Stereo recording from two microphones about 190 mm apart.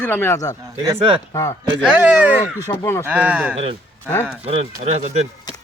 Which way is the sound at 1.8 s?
5° right (ahead or behind).